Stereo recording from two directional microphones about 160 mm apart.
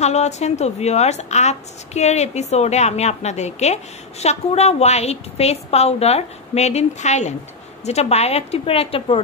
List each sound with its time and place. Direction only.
0.0 s a woman's voice: 45° left (ahead or behind)